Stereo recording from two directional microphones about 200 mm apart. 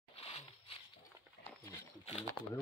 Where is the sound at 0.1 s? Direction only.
30° left (ahead or behind).